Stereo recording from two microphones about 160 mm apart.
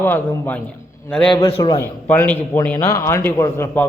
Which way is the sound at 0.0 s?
10° left (ahead or behind).